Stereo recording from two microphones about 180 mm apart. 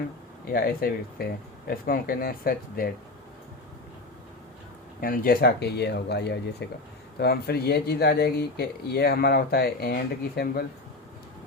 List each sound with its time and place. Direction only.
0.5 s speech: 55° left (ahead or behind)
4.9 s speech: 55° left (ahead or behind)